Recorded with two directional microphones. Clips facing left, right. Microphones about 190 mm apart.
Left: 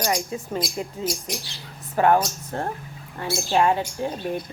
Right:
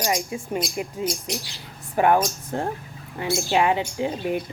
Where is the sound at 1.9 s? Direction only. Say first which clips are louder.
Even; 15° right (ahead or behind).